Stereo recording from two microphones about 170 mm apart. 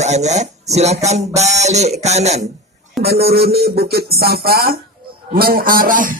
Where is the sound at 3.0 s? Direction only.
65° right (ahead or behind).